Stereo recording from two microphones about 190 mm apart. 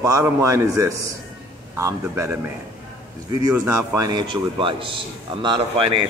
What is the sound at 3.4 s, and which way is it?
Speech, 15° right (ahead or behind).